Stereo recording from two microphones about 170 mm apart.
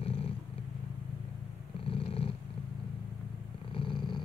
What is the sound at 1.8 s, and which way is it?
Purr, 35° left (ahead or behind).